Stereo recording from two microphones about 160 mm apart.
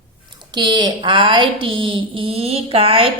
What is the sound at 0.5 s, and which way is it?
A woman's voice, 30° right (ahead or behind).